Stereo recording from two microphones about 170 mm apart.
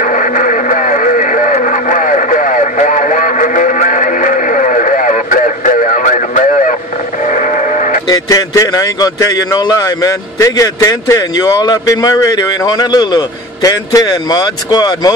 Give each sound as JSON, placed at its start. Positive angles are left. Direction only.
{"t": 0.0, "sound": "radio", "side_deg": 50}
{"t": 7.2, "sound": "vehicle", "side_deg": 50}
{"t": 8.1, "sound": "a man's voice", "side_deg": 20}